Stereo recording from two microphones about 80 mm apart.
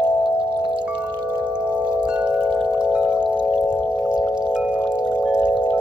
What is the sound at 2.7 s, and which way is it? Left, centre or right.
Wind chime, centre.